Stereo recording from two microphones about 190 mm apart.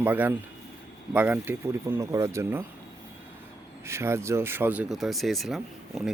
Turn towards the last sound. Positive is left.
turn(degrees=0)  # may be behind; listen again after turning